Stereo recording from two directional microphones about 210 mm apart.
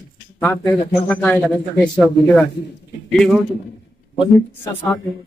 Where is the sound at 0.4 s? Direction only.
10° left (ahead or behind).